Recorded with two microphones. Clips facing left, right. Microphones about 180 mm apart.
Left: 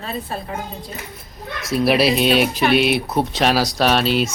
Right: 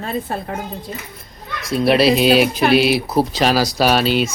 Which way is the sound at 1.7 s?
Centre (ahead or behind).